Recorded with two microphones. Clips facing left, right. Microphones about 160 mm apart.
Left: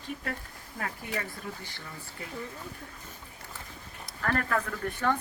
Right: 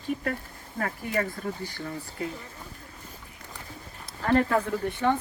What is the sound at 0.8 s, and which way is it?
Speech, 45° right (ahead or behind).